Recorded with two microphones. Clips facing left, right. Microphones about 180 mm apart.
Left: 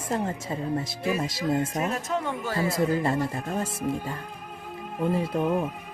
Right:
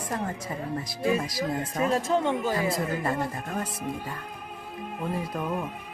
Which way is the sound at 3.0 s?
25° left (ahead or behind).